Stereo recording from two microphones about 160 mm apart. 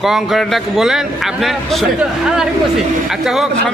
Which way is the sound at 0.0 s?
Centre (ahead or behind).